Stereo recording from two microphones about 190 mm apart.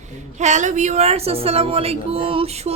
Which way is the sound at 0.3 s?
40° right (ahead or behind).